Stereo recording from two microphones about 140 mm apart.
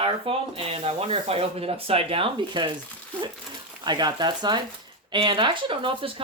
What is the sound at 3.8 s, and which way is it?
Speech, 30° right (ahead or behind).